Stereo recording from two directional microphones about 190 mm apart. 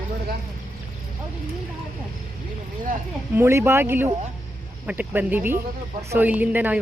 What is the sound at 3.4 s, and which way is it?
Speech, 15° right (ahead or behind).